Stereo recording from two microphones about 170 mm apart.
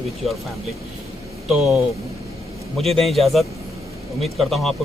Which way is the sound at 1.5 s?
Centre (ahead or behind).